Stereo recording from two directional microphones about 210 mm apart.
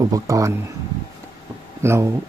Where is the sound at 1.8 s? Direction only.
10° right (ahead or behind).